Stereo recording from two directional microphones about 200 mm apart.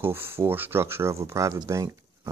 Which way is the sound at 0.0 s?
10° right (ahead or behind).